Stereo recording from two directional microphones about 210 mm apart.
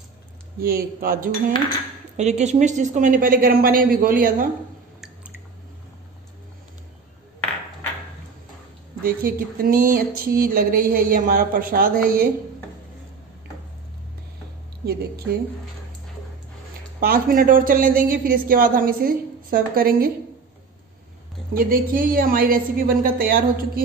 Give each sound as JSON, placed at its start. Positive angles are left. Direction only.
{"t": 0.6, "sound": "a man's voice", "side_deg": -45}
{"t": 9.0, "sound": "a man's voice", "side_deg": -45}
{"t": 17.0, "sound": "a man's voice", "side_deg": -45}
{"t": 21.5, "sound": "a man's voice", "side_deg": -45}